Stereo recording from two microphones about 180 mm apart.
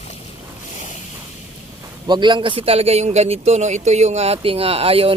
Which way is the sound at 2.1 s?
25° right (ahead or behind).